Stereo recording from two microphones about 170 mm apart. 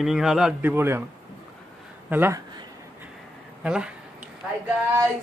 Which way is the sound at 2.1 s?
15° right (ahead or behind).